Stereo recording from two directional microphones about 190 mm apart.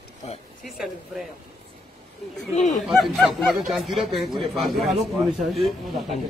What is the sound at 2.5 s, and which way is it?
Speech, 40° left (ahead or behind).